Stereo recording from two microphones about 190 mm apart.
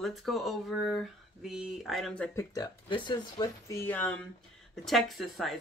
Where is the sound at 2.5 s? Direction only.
20° left (ahead or behind).